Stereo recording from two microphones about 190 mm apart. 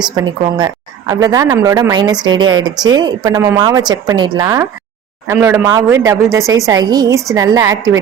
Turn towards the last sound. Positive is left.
turn(degrees=-15)  # may be behind; listen again after turning